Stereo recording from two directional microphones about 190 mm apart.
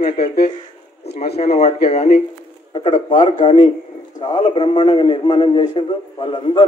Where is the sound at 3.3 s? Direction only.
25° left (ahead or behind).